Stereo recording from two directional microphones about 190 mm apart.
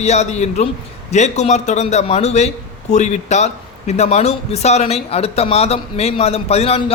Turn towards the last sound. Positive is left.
turn(degrees=30)  # may be behind; listen again after turning